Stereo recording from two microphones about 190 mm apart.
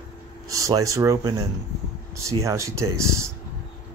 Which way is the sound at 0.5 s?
15° right (ahead or behind).